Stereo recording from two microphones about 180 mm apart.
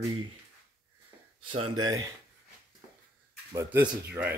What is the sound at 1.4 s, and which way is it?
Speech, 35° right (ahead or behind).